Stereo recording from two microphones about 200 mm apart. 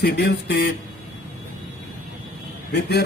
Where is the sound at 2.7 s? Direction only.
55° left (ahead or behind).